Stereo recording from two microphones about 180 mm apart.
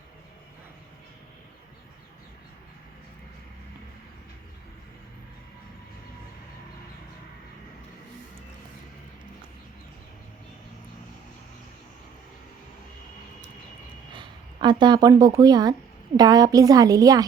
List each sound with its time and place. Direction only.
14.1 s a woman's voice: 25° right (ahead or behind)